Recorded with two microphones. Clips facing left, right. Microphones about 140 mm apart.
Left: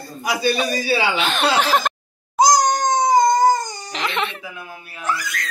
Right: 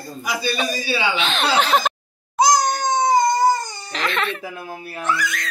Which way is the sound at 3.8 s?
20° left (ahead or behind).